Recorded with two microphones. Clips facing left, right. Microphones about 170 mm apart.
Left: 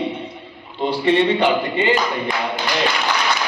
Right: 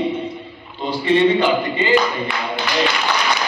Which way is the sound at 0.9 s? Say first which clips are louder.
Right 1 dB; 65° left (ahead or behind).